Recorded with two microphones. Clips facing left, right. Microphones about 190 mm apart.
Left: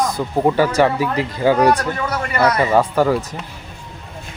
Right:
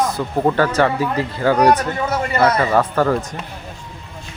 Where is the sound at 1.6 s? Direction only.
15° right (ahead or behind).